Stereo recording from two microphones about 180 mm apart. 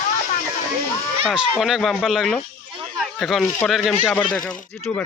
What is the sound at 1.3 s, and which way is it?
Speech, centre (ahead or behind).